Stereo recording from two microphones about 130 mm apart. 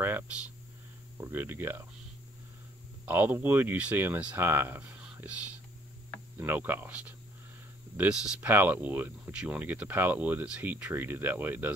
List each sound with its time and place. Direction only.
1.1 s speech: 15° right (ahead or behind)
3.1 s speech: 15° right (ahead or behind)